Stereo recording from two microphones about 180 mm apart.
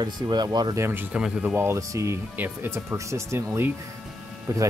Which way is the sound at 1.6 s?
15° right (ahead or behind).